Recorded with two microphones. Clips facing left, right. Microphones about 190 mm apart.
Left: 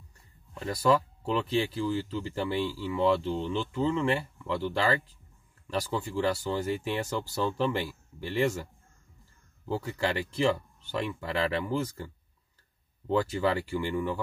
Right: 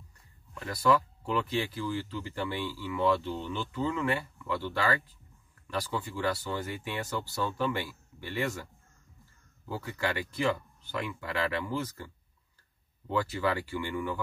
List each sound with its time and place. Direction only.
0.6 s speech: 30° left (ahead or behind)
9.7 s speech: 25° left (ahead or behind)
13.1 s speech: 30° left (ahead or behind)